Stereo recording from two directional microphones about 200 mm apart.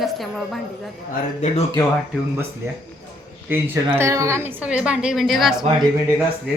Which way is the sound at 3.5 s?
10° right (ahead or behind).